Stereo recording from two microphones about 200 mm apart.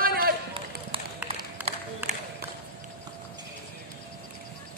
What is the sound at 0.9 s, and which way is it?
Run, 25° right (ahead or behind).